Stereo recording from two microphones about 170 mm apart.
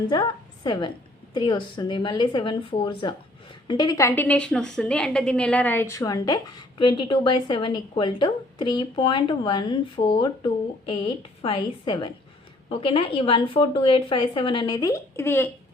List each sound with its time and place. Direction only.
0.1 s a woman's voice: 25° left (ahead or behind)